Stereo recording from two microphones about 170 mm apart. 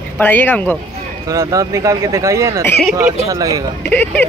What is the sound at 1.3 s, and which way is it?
A man's voice, 20° right (ahead or behind).